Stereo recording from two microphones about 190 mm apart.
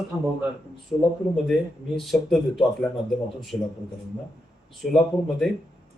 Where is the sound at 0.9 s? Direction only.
20° left (ahead or behind).